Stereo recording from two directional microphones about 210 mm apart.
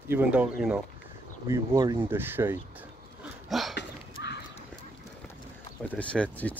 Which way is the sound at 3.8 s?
55° left (ahead or behind).